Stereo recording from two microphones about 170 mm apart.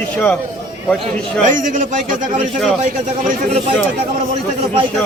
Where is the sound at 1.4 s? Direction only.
50° right (ahead or behind).